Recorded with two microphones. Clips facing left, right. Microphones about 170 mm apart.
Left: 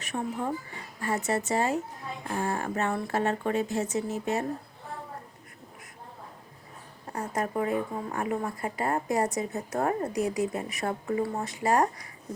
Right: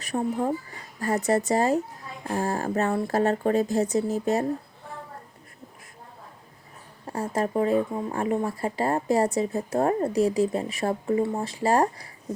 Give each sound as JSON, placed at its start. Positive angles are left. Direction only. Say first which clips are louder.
{"t": 0.0, "sound": "speech", "louder": "right 5 dB", "side_deg": -35}
{"t": 7.1, "sound": "speech", "louder": "right 4 dB", "side_deg": -30}